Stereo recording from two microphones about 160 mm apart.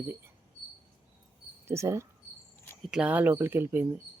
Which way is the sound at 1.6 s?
15° right (ahead or behind).